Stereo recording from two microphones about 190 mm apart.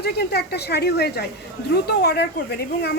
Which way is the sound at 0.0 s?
60° left (ahead or behind).